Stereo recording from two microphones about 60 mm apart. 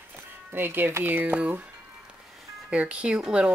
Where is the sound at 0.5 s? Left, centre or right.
Right.